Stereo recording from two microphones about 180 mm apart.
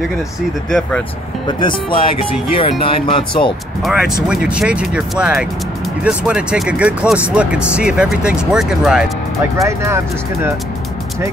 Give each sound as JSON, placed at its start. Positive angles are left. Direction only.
{"t": 0.7, "sound": "speech", "side_deg": 0}
{"t": 1.6, "sound": "speech", "side_deg": 30}
{"t": 4.3, "sound": "speech", "side_deg": -5}
{"t": 9.6, "sound": "speech", "side_deg": -15}